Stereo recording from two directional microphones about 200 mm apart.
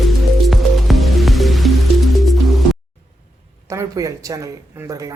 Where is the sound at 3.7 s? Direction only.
15° right (ahead or behind).